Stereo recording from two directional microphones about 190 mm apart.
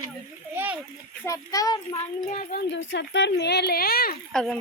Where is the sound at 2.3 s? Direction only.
45° left (ahead or behind).